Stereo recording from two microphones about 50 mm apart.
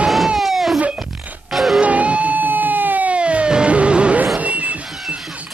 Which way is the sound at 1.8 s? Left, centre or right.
Right.